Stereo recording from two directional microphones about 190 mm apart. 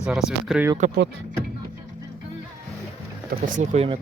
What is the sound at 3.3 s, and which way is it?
Speech, 45° right (ahead or behind).